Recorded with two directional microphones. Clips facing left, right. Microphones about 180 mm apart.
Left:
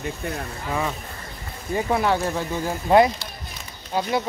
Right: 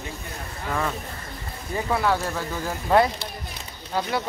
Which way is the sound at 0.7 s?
10° left (ahead or behind).